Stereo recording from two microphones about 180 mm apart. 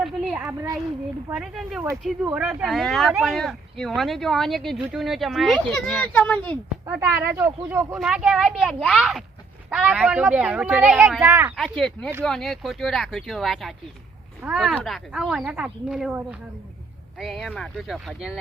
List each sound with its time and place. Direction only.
0.0 s a sound: 5° right (ahead or behind)
1.3 s speech: 5° right (ahead or behind)
6.9 s speech: 10° right (ahead or behind)
7.9 s speech: 5° right (ahead or behind)
11.5 s speech: centre (ahead or behind)